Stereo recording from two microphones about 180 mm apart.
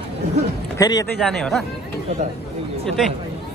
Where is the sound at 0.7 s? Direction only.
20° left (ahead or behind).